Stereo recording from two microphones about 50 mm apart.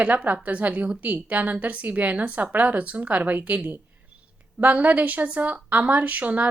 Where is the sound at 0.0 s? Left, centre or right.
Right.